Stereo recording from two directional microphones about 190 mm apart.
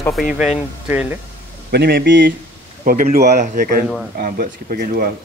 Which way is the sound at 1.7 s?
55° right (ahead or behind).